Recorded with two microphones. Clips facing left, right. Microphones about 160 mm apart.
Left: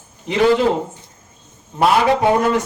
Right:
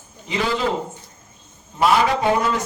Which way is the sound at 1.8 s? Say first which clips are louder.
Left 3 dB; 60° left (ahead or behind).